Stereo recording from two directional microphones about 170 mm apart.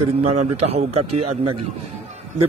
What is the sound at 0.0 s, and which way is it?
A man's voice, 40° right (ahead or behind).